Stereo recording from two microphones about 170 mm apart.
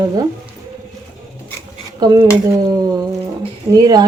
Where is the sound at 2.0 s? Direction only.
20° right (ahead or behind).